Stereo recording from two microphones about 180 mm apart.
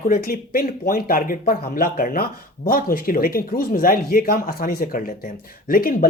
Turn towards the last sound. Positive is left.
turn(degrees=55)  # may be behind; listen again after turning